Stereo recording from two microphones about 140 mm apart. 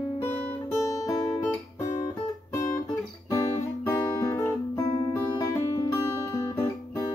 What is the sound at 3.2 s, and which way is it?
Guitar, 20° left (ahead or behind).